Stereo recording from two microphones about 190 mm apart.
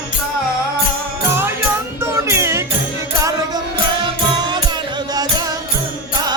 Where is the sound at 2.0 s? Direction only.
15° right (ahead or behind).